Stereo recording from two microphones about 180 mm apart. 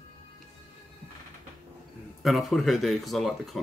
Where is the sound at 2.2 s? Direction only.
Centre (ahead or behind).